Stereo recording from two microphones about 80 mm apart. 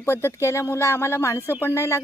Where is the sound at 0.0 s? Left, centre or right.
Left.